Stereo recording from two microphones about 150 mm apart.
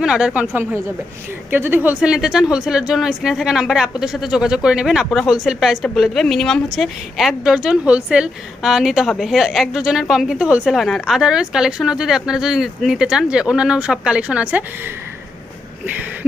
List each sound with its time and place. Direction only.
0.0 s a woman's voice: 5° right (ahead or behind)